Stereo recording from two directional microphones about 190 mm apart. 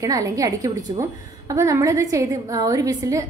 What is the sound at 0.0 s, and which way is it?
A woman's voice, 20° right (ahead or behind).